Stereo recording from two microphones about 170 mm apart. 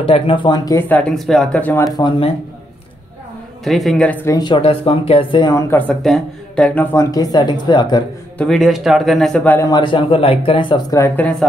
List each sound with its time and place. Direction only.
0.0 s speech: 30° left (ahead or behind)
0.7 s speech: 10° left (ahead or behind)
2.0 s speech: 30° left (ahead or behind)
3.6 s a man's voice: centre (ahead or behind)
4.4 s speech: 30° left (ahead or behind)
8.4 s a man's voice: centre (ahead or behind)
9.7 s speech: 30° left (ahead or behind)
11.0 s speech: 10° left (ahead or behind)